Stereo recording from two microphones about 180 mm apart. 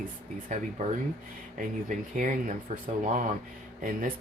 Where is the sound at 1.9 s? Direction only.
45° right (ahead or behind).